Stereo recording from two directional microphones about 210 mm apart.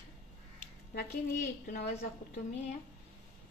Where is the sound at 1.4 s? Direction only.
40° left (ahead or behind).